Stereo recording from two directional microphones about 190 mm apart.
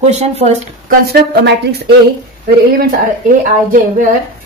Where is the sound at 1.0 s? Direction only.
60° right (ahead or behind).